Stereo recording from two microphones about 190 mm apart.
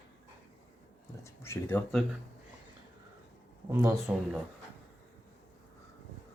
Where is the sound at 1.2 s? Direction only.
15° left (ahead or behind).